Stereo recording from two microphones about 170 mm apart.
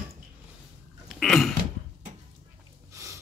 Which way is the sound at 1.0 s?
Centre (ahead or behind).